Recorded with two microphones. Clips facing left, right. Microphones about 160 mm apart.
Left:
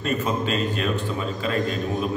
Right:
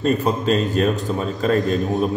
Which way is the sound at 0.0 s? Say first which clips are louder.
Right 5 dB; 40° right (ahead or behind).